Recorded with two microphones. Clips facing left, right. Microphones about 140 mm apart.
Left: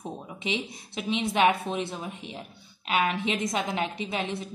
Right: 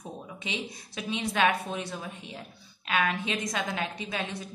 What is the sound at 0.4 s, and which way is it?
A woman's voice, 25° left (ahead or behind).